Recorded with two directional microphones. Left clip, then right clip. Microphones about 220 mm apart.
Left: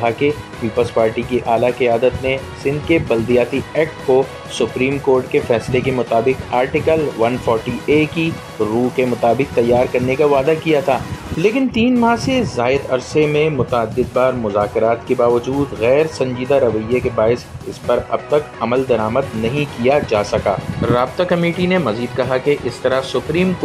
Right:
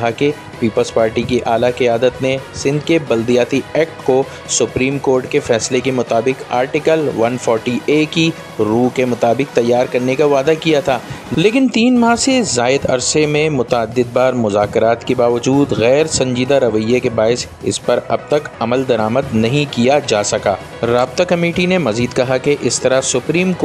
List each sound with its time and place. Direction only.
0.7 s speech: 15° right (ahead or behind)